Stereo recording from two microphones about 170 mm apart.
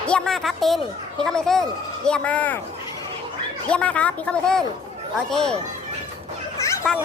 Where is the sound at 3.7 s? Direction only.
5° left (ahead or behind).